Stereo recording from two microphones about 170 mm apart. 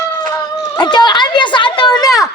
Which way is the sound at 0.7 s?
25° left (ahead or behind).